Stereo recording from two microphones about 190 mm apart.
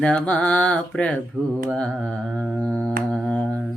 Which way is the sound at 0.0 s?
5° left (ahead or behind).